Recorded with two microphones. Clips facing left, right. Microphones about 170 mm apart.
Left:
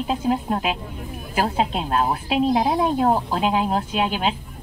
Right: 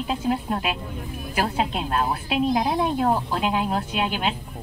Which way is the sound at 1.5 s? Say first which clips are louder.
Left 2 dB; 35° left (ahead or behind).